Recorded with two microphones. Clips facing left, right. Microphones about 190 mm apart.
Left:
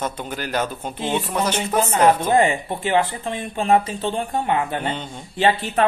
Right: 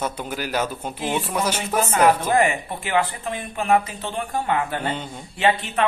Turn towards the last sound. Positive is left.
turn(degrees=35)  # may be behind; listen again after turning